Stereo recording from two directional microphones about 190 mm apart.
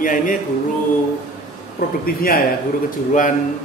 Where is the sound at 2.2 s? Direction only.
50° left (ahead or behind).